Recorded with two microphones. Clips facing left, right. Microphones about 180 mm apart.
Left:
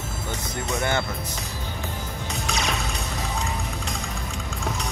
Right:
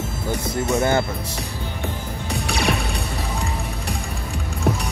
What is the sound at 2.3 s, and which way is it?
Music, 35° right (ahead or behind).